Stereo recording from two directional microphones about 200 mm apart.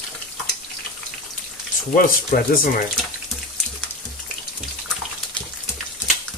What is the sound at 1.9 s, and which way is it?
Speech, 45° left (ahead or behind).